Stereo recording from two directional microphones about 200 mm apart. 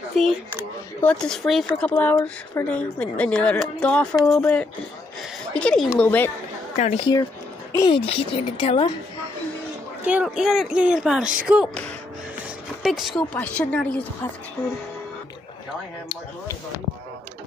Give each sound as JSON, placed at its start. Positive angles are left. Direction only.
{"t": 0.2, "sound": "speech", "side_deg": 0}
{"t": 6.8, "sound": "speech", "side_deg": 30}
{"t": 7.7, "sound": "a woman's voice", "side_deg": 15}
{"t": 8.0, "sound": "a woman's voice", "side_deg": 30}
{"t": 10.0, "sound": "speech", "side_deg": -5}
{"t": 12.8, "sound": "speech", "side_deg": 0}